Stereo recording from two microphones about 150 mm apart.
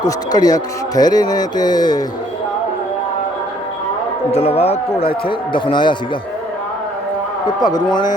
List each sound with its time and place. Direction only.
0.0 s a man's voice: 25° left (ahead or behind)
4.3 s speech: 45° left (ahead or behind)
7.4 s a man's voice: 30° left (ahead or behind)